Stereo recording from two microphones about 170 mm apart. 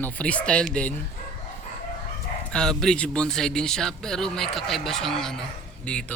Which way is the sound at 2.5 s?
5° left (ahead or behind).